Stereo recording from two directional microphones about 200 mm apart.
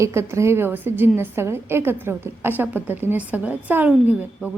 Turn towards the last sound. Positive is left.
turn(degrees=-10)  # may be behind; listen again after turning